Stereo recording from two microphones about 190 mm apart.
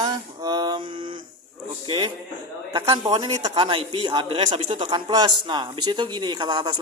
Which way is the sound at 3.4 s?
30° right (ahead or behind).